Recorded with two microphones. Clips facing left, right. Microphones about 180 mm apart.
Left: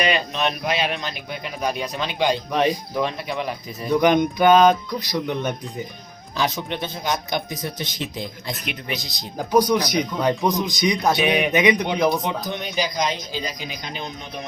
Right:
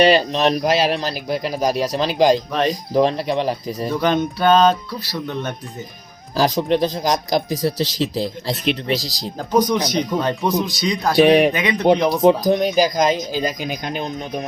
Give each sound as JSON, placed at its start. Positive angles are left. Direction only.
{"t": 0.0, "sound": "speech", "side_deg": -35}
{"t": 2.5, "sound": "speech", "side_deg": 15}
{"t": 2.9, "sound": "speech", "side_deg": -35}
{"t": 3.8, "sound": "speech", "side_deg": 15}
{"t": 6.3, "sound": "speech", "side_deg": -35}
{"t": 7.5, "sound": "speech", "side_deg": -90}
{"t": 7.9, "sound": "speech", "side_deg": -35}
{"t": 9.4, "sound": "speech", "side_deg": 10}
{"t": 11.3, "sound": "speech", "side_deg": -35}
{"t": 11.5, "sound": "speech", "side_deg": 15}
{"t": 12.0, "sound": "speech", "side_deg": 0}
{"t": 12.3, "sound": "speech", "side_deg": -40}